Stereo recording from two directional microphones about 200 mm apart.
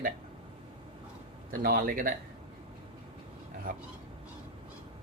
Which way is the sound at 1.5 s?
50° right (ahead or behind).